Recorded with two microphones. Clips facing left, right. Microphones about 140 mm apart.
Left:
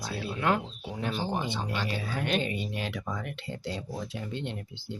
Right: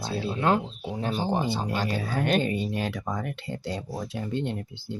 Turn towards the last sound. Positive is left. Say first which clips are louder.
# right 5 dB
turn(degrees=-40)  # may be behind; listen again after turning